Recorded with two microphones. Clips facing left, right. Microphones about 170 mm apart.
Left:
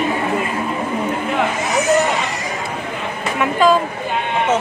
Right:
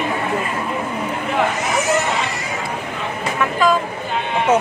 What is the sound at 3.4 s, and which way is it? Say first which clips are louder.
Speech: left 3 dB; 30° left (ahead or behind).